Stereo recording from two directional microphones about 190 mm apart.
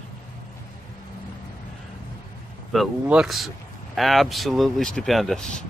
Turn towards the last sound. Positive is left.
turn(degrees=5)  # may be behind; listen again after turning